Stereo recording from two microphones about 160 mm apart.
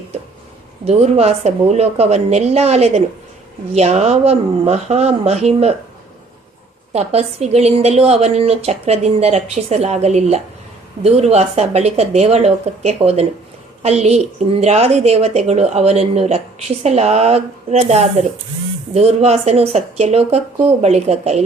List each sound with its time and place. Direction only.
0.9 s a woman's voice: 40° right (ahead or behind)
6.9 s a woman's voice: 40° right (ahead or behind)